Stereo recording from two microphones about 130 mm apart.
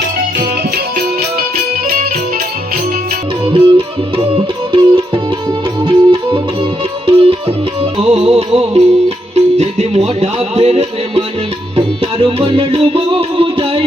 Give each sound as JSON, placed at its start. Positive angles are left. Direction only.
{"t": 3.4, "sound": "music", "side_deg": -45}